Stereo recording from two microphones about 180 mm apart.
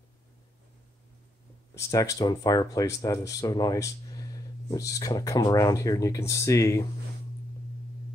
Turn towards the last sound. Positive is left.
turn(degrees=15)  # may be behind; listen again after turning